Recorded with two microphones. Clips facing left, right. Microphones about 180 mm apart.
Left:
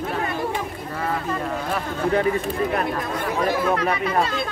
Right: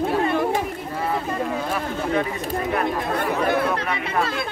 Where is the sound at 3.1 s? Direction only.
60° right (ahead or behind).